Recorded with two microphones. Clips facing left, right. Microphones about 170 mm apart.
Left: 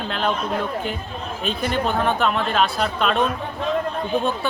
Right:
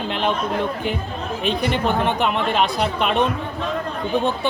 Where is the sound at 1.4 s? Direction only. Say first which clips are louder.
Right 2 dB; 20° right (ahead or behind).